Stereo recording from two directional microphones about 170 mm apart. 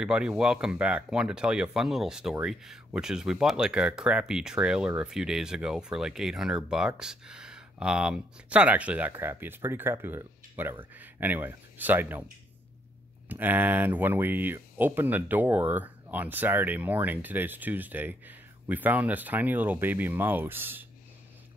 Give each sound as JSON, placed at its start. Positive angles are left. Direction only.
{"t": 0.0, "sound": "speech", "side_deg": -5}
{"t": 13.3, "sound": "speech", "side_deg": -10}